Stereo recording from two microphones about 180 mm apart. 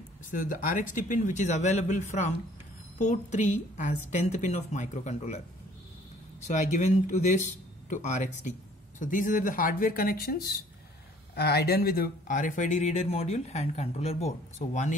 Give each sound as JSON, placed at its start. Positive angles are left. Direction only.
{"t": 0.3, "sound": "speech", "side_deg": 50}
{"t": 6.4, "sound": "speech", "side_deg": 40}